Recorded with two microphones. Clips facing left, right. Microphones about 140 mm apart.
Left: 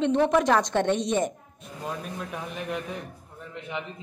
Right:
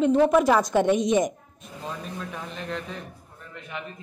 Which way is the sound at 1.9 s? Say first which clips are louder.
Left 1 dB; 10° left (ahead or behind).